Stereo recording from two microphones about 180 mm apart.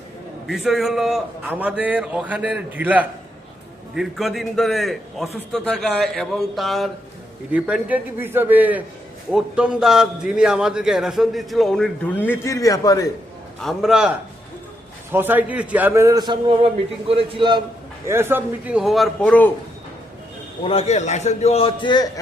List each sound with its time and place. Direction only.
0.4 s a man's voice: centre (ahead or behind); by 13.1 s 20° left (ahead or behind)
13.6 s a man's voice: centre (ahead or behind)
15.1 s a man's voice: 10° right (ahead or behind); by 17.6 s 30° right (ahead or behind)
18.0 s a man's voice: 15° right (ahead or behind); by 19.5 s 5° left (ahead or behind)
20.7 s a man's voice: 35° left (ahead or behind)